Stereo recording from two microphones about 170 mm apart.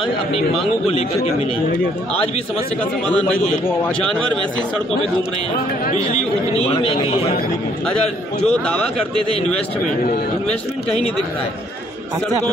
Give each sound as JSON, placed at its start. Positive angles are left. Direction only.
{"t": 3.1, "sound": "a man's voice", "side_deg": 5}
{"t": 6.7, "sound": "a man's voice", "side_deg": 30}
{"t": 8.4, "sound": "a man's voice", "side_deg": 5}